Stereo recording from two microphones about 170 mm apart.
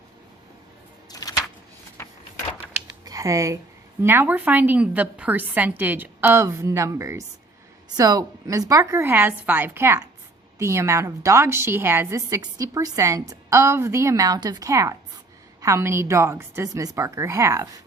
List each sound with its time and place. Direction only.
1.1 s a sound: 20° left (ahead or behind)
3.0 s computer keyboard: 20° right (ahead or behind)
4.0 s a woman's voice: 15° right (ahead or behind)